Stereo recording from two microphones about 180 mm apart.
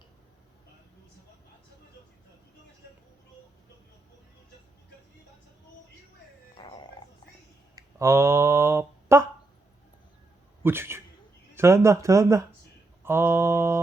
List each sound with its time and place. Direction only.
6.6 s dog: 25° left (ahead or behind)
7.8 s speech: 15° right (ahead or behind)
10.6 s speech: 15° right (ahead or behind)